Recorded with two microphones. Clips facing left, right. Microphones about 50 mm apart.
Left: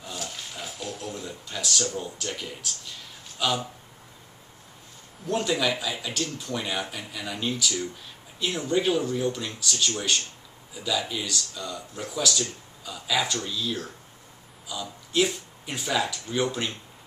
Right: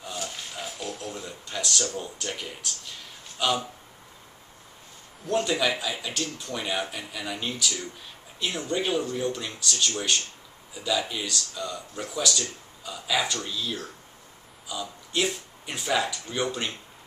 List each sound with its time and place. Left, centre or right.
0.0 s a sound: centre
2.0 s speech: centre
5.2 s speech: centre